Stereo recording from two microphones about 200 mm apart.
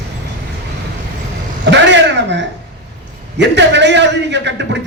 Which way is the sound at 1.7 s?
60° right (ahead or behind).